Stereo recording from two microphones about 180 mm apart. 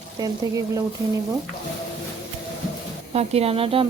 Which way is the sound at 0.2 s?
20° right (ahead or behind).